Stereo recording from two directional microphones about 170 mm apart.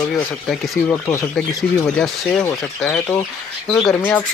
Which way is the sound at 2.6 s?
5° left (ahead or behind).